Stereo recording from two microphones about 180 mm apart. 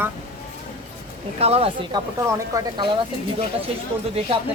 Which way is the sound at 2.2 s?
15° right (ahead or behind).